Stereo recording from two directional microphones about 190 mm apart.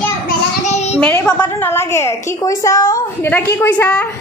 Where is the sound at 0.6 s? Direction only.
35° left (ahead or behind).